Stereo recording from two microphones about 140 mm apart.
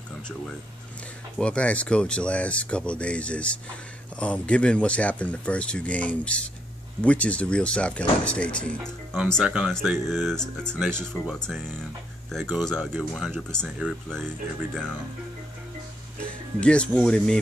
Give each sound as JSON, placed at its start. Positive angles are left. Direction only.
{"t": 1.4, "sound": "speech", "side_deg": 10}
{"t": 9.4, "sound": "speech", "side_deg": -5}
{"t": 10.9, "sound": "speech", "side_deg": -15}
{"t": 11.3, "sound": "speech", "side_deg": 5}
{"t": 16.2, "sound": "speech", "side_deg": 10}